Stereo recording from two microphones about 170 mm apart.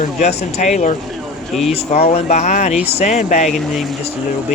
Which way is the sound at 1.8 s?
35° left (ahead or behind).